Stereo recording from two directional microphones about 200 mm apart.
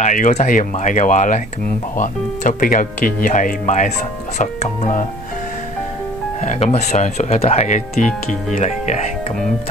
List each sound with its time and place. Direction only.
0.0 s speech: 40° left (ahead or behind)
6.4 s speech: 35° left (ahead or behind)